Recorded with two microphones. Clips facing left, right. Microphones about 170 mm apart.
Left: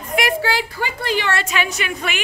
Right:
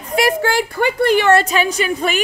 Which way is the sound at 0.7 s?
55° right (ahead or behind).